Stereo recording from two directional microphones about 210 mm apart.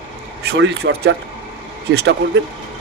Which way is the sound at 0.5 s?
50° right (ahead or behind).